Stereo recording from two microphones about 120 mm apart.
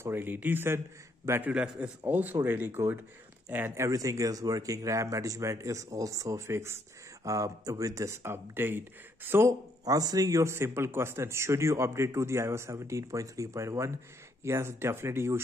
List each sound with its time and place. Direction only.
0.0 s a man's voice: 20° right (ahead or behind)